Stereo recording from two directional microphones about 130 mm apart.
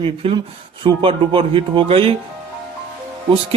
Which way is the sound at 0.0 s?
45° right (ahead or behind).